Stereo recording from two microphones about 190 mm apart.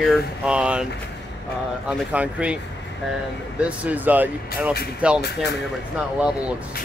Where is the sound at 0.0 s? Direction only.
5° right (ahead or behind).